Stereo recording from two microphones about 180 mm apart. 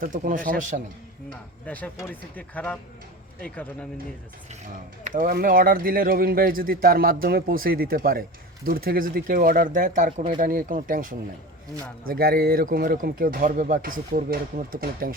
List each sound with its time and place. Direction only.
0.0 s speech: 50° right (ahead or behind)
1.6 s speech: 10° left (ahead or behind)
5.0 s speech: 50° right (ahead or behind)